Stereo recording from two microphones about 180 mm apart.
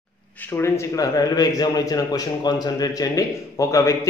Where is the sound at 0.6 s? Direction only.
15° left (ahead or behind).